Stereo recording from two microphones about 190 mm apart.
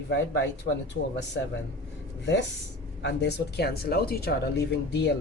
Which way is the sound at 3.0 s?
60° left (ahead or behind).